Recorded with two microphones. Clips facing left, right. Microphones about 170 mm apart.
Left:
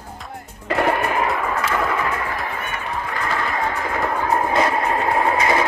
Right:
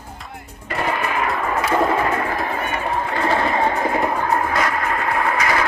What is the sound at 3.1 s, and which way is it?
Music, 30° right (ahead or behind).